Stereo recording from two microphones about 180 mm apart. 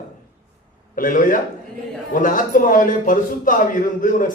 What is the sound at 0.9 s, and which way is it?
A man's voice, 50° left (ahead or behind).